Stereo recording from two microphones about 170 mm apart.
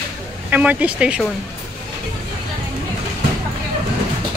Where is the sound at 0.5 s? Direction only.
10° right (ahead or behind).